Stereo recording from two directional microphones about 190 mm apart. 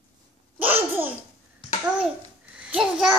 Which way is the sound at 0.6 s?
10° right (ahead or behind).